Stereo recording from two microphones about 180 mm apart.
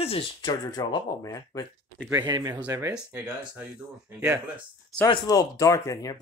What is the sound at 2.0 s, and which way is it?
Speech, 20° right (ahead or behind).